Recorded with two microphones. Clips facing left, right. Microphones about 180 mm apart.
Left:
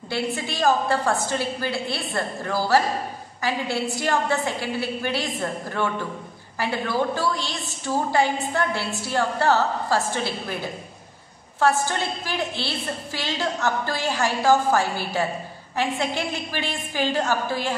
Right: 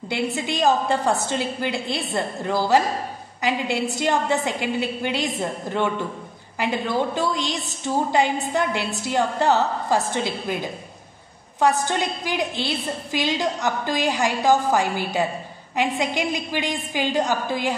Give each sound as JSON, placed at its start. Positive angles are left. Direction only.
{"t": 0.1, "sound": "a woman's voice", "side_deg": -20}